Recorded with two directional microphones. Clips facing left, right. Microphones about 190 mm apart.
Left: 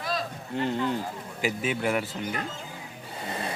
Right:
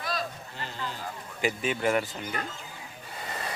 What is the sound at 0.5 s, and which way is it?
Speech, 65° left (ahead or behind).